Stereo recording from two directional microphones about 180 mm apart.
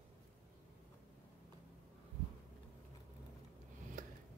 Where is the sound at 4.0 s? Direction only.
50° right (ahead or behind).